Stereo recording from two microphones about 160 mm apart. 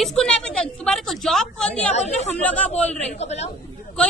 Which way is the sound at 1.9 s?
45° left (ahead or behind).